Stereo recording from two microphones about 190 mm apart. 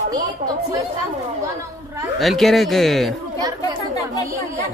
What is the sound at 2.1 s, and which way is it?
Speech, centre (ahead or behind).